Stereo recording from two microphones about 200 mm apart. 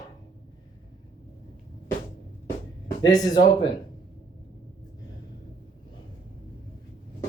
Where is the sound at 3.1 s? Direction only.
20° left (ahead or behind).